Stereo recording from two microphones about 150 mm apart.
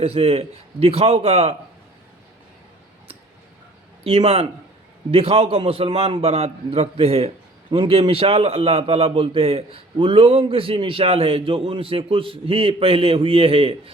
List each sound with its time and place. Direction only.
0.0 s a man's voice: 40° right (ahead or behind)
4.0 s a man's voice: 40° right (ahead or behind)